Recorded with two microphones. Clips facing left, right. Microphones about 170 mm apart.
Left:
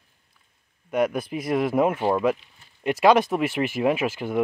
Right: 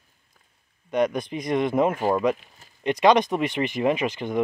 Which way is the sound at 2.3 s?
45° right (ahead or behind).